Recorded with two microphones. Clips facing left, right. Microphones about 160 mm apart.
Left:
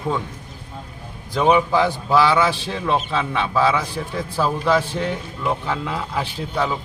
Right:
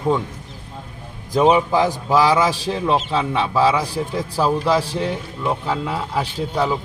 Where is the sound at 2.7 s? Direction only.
15° right (ahead or behind).